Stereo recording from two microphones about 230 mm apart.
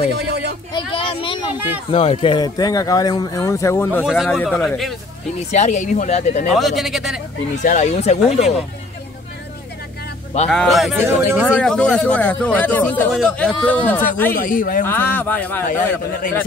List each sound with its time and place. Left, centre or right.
0.2 s a sound: right
0.7 s a sound: left
1.9 s speech: left
4.0 s speech: centre
5.5 s speech: left
6.5 s speech: centre
7.6 s speech: left
10.5 s speech: centre
11.4 s speech: centre
14.3 s a man's voice: left
14.9 s speech: centre
16.1 s a man's voice: left